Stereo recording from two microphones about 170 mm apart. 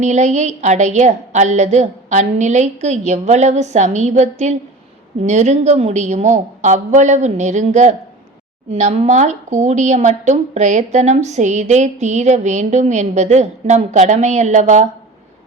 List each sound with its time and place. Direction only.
0.0 s speech: 45° right (ahead or behind)